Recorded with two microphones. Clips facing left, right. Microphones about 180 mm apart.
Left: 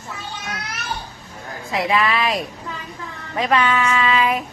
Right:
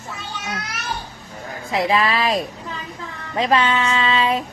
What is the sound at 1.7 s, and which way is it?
A woman's voice, 30° right (ahead or behind).